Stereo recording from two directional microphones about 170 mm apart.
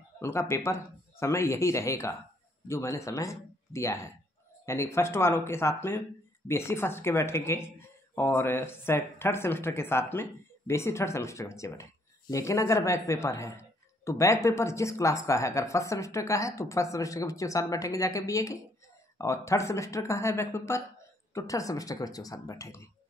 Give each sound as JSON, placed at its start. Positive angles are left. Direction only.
{"t": 0.2, "sound": "speech", "side_deg": 15}